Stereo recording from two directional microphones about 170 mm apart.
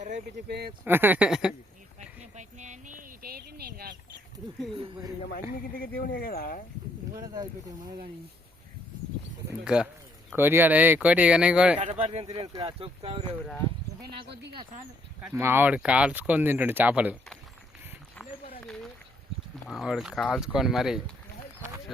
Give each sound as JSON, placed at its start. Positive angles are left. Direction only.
{"t": 0.3, "sound": "speech", "side_deg": -70}
{"t": 0.9, "sound": "speech", "side_deg": -10}
{"t": 2.3, "sound": "a sound", "side_deg": -45}
{"t": 4.7, "sound": "speech", "side_deg": -30}
{"t": 5.2, "sound": "speech", "side_deg": 60}
{"t": 7.1, "sound": "speech", "side_deg": -20}
{"t": 9.6, "sound": "speech", "side_deg": -5}
{"t": 11.8, "sound": "speech", "side_deg": -40}
{"t": 14.3, "sound": "speech", "side_deg": -85}
{"t": 15.4, "sound": "speech", "side_deg": -15}
{"t": 19.6, "sound": "speech", "side_deg": 0}